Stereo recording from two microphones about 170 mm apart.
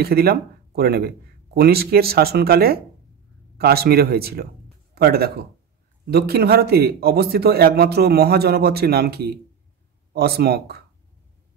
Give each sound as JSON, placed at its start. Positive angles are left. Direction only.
{"t": 0.0, "sound": "a man's voice", "side_deg": -65}